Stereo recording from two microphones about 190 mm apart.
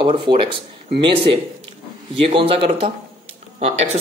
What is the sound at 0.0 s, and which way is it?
Speech, 25° right (ahead or behind).